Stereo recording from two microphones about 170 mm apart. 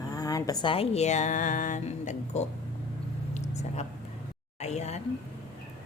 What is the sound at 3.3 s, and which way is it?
Whispering, 40° left (ahead or behind).